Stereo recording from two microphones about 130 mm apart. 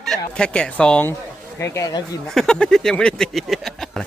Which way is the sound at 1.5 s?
20° left (ahead or behind).